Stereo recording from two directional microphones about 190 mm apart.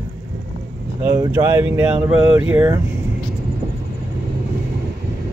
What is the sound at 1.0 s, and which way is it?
Speech, 10° right (ahead or behind).